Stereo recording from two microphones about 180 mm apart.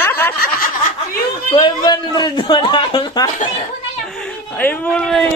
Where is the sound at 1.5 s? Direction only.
25° left (ahead or behind).